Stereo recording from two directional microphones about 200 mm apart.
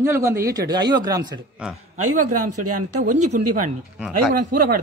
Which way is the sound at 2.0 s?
90° right.